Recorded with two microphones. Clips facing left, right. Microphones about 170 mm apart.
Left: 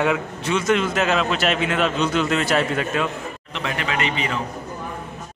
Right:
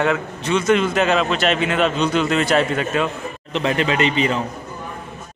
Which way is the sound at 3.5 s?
25° right (ahead or behind).